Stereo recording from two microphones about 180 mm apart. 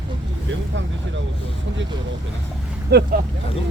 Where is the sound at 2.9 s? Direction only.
65° right (ahead or behind).